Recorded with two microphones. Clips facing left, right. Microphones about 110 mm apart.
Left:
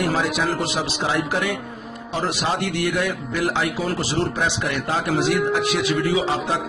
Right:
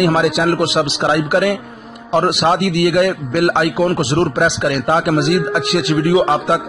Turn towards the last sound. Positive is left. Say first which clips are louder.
# right 8 dB
turn(degrees=-65)  # may be behind; listen again after turning